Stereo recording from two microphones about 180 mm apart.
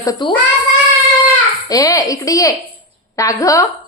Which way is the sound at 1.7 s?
20° left (ahead or behind).